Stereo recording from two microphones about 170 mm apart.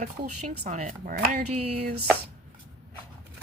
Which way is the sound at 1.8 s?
65° right (ahead or behind).